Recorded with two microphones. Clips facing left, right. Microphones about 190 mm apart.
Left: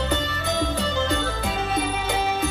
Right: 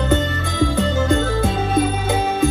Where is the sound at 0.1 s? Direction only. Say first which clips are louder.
Right 5 dB; 45° right (ahead or behind).